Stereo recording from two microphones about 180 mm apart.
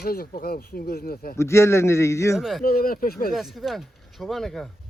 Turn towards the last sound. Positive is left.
turn(degrees=0)  # may be behind; listen again after turning